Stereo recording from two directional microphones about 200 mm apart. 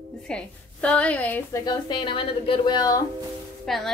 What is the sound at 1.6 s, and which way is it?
A woman's voice, 20° left (ahead or behind).